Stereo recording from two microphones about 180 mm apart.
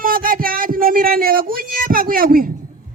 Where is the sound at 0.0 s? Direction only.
50° right (ahead or behind).